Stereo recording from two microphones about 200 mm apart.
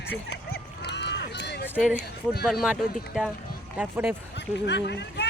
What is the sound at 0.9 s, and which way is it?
Run, 60° left (ahead or behind).